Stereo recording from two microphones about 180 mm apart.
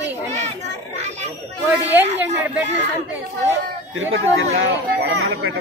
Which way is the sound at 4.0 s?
90° right.